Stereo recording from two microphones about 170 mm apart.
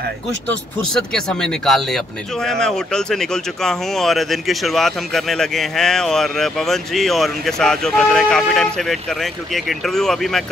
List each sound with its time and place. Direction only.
0.9 s speech: 5° left (ahead or behind)